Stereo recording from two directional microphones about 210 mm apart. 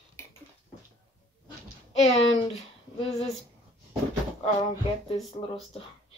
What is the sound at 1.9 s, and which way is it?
Speech, 30° left (ahead or behind).